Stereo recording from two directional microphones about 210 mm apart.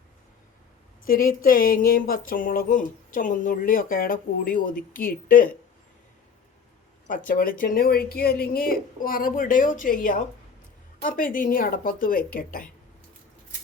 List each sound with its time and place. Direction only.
1.0 s speech: 45° left (ahead or behind)
7.3 s speech: 40° left (ahead or behind)